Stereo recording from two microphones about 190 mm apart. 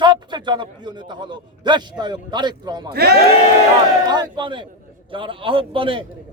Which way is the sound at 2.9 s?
55° right (ahead or behind).